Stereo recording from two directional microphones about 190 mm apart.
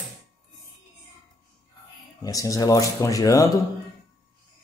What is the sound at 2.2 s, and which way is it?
Speech, 20° left (ahead or behind).